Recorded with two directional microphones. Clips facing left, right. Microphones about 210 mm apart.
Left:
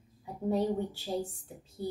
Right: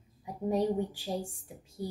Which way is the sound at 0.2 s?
15° right (ahead or behind).